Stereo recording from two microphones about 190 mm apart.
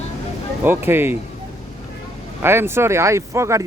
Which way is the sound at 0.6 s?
10° right (ahead or behind).